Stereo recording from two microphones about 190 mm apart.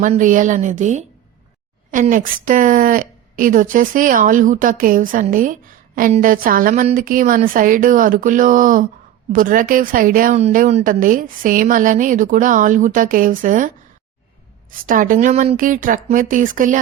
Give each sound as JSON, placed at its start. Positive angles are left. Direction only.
{"t": 0.0, "sound": "a woman's voice", "side_deg": -45}